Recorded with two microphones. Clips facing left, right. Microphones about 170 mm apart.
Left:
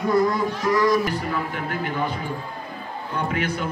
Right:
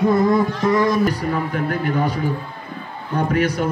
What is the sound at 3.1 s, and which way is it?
Speech, 45° right (ahead or behind).